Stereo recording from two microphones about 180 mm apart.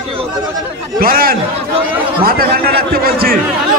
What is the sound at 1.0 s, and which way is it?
A man's voice, 55° right (ahead or behind).